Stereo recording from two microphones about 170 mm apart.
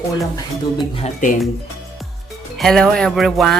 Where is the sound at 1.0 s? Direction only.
50° left (ahead or behind).